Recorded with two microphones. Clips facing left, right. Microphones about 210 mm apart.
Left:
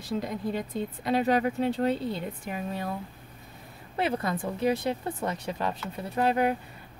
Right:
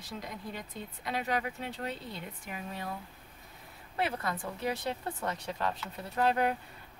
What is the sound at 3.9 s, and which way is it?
Speech, 25° left (ahead or behind).